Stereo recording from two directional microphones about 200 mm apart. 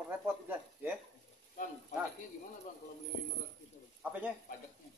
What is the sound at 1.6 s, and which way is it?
Speech, 45° left (ahead or behind).